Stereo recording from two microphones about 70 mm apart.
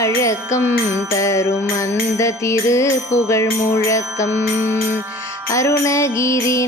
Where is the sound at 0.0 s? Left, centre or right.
Left.